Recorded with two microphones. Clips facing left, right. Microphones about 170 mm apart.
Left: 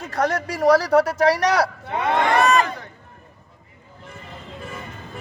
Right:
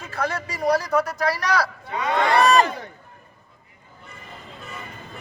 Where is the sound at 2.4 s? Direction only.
35° right (ahead or behind).